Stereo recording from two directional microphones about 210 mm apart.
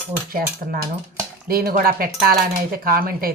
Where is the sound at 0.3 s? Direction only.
45° right (ahead or behind).